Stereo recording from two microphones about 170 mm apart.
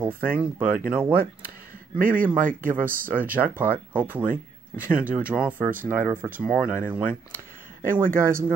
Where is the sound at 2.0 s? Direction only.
55° right (ahead or behind).